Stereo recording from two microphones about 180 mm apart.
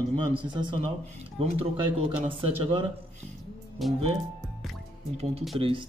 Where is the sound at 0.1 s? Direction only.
25° right (ahead or behind).